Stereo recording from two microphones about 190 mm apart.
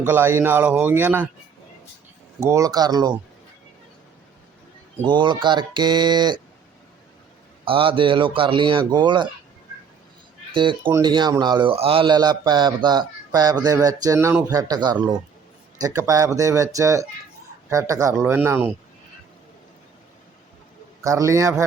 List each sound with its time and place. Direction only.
0.0 s speech: 10° right (ahead or behind)
2.4 s a man's voice: 15° right (ahead or behind)
5.0 s a man's voice: 25° right (ahead or behind)
7.6 s a man's voice: 30° right (ahead or behind)
10.5 s a man's voice: 25° right (ahead or behind)
21.0 s speech: 15° right (ahead or behind)